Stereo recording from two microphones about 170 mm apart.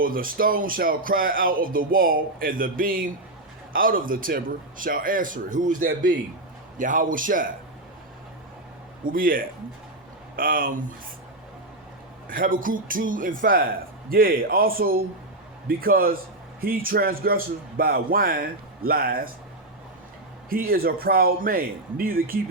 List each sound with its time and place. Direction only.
0.0 s a man's voice: 55° right (ahead or behind)
9.0 s speech: 55° right (ahead or behind)
12.3 s speech: 55° right (ahead or behind)
20.5 s speech: 60° right (ahead or behind)